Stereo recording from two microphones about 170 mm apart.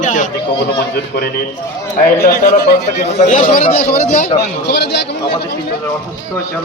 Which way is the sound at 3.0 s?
45° left (ahead or behind).